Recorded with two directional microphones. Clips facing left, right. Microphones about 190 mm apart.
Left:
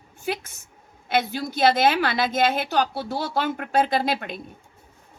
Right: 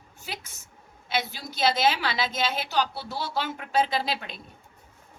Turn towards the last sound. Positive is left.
turn(degrees=50)  # may be behind; listen again after turning